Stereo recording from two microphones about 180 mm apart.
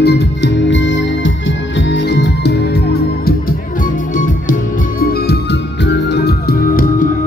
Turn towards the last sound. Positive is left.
turn(degrees=55)  # may be behind; listen again after turning